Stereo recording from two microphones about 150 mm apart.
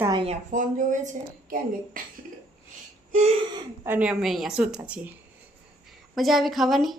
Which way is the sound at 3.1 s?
50° right (ahead or behind).